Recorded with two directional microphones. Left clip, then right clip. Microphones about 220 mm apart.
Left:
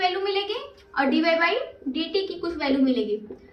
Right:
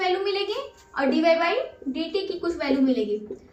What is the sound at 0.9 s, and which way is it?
A woman's voice, centre (ahead or behind).